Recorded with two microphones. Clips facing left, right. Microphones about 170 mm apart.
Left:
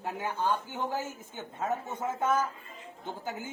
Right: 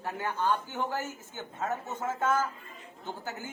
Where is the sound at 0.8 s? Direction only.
15° left (ahead or behind).